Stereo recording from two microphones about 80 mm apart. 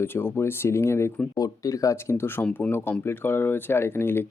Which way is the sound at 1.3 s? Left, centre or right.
Left.